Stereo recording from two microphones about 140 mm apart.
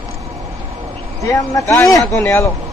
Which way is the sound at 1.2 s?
25° left (ahead or behind).